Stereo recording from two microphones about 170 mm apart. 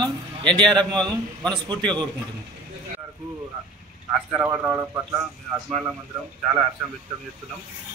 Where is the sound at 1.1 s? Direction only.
25° right (ahead or behind).